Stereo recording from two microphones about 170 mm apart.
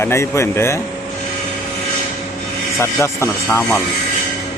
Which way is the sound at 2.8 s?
15° left (ahead or behind).